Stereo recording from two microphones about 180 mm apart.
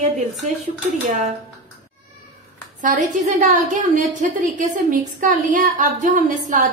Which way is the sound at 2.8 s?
45° right (ahead or behind).